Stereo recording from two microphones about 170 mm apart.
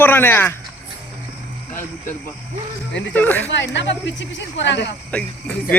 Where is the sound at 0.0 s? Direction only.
10° left (ahead or behind).